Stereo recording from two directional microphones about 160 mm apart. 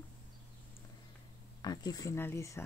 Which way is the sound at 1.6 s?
25° left (ahead or behind).